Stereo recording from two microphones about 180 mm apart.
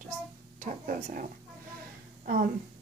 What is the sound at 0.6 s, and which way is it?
Speech, 45° right (ahead or behind).